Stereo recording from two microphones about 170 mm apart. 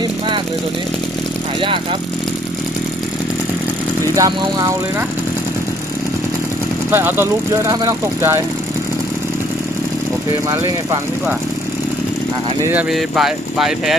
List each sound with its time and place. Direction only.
1.6 s speech: 30° right (ahead or behind)
4.1 s speech: 20° right (ahead or behind)
6.9 s speech: 15° right (ahead or behind)
10.5 s speech: 25° right (ahead or behind)
12.7 s speech: centre (ahead or behind)